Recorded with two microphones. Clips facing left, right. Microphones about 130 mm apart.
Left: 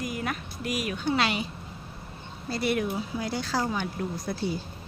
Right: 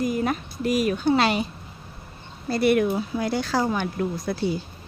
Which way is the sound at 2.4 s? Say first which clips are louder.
Right 7 dB; 60° right (ahead or behind).